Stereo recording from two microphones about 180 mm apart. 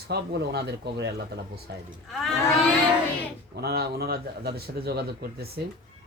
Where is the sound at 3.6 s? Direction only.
65° right (ahead or behind).